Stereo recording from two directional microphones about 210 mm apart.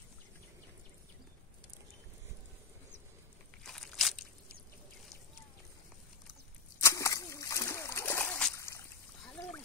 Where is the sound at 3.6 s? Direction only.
Centre (ahead or behind).